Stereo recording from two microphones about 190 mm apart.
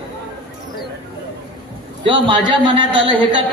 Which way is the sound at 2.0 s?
25° right (ahead or behind).